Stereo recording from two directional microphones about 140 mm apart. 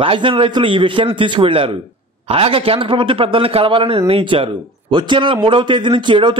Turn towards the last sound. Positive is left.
turn(degrees=-35)  # may be behind; listen again after turning